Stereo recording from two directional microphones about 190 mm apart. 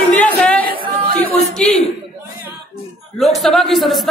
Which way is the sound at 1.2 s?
5° left (ahead or behind).